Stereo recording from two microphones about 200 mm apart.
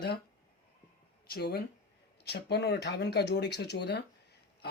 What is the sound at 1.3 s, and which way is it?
Speech, 55° left (ahead or behind).